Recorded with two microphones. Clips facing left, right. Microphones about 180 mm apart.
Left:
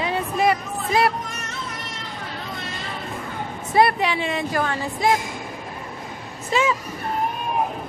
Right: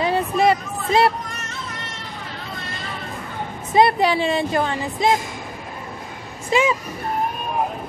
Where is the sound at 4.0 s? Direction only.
35° right (ahead or behind).